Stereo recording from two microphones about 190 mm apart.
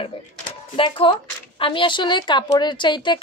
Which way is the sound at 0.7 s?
25° left (ahead or behind).